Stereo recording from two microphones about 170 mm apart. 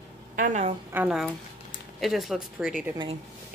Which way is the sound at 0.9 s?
5° right (ahead or behind).